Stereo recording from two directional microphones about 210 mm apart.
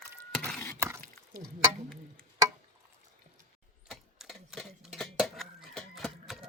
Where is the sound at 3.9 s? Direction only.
Centre (ahead or behind).